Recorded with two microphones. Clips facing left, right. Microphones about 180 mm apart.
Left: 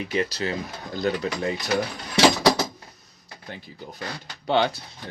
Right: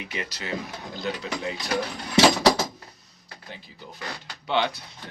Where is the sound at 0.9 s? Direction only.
45° left (ahead or behind).